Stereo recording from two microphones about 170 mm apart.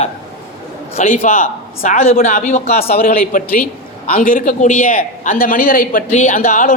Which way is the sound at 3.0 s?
55° left (ahead or behind).